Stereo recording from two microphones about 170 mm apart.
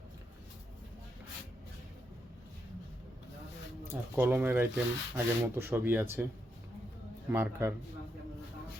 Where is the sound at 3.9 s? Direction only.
10° right (ahead or behind).